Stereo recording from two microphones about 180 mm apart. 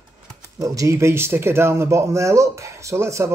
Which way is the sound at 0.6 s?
20° right (ahead or behind).